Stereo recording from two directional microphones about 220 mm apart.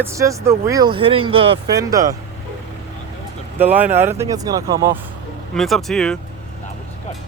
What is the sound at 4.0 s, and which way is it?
Speech, 10° right (ahead or behind).